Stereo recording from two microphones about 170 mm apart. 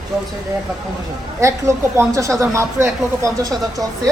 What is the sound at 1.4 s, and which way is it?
Speech, 15° right (ahead or behind).